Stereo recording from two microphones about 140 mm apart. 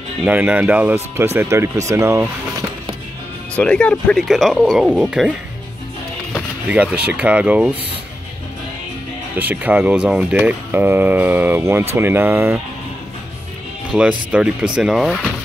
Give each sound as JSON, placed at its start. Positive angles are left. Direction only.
{"t": 0.2, "sound": "speech", "side_deg": -10}
{"t": 3.5, "sound": "speech", "side_deg": 10}
{"t": 6.7, "sound": "speech", "side_deg": -10}
{"t": 9.4, "sound": "speech", "side_deg": -10}
{"t": 13.9, "sound": "speech", "side_deg": -5}